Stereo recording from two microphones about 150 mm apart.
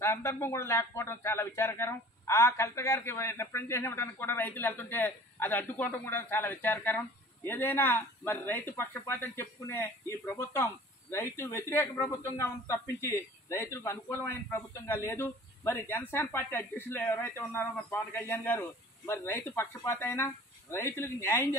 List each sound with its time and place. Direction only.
0.0 s speech: 20° left (ahead or behind)